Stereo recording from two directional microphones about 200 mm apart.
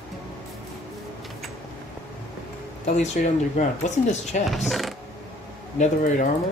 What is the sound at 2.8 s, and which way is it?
Speech, 35° left (ahead or behind).